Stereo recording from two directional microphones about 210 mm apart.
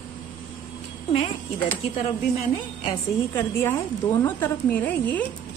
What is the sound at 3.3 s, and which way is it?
A woman's voice, 10° left (ahead or behind).